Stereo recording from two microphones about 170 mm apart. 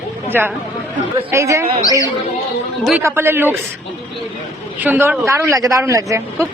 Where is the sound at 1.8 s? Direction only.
20° left (ahead or behind).